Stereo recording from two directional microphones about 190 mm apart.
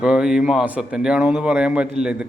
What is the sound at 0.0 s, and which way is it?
A man's voice, 5° right (ahead or behind).